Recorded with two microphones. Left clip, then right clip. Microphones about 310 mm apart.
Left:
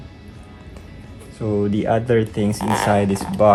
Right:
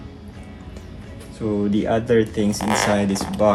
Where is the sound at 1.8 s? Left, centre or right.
Left.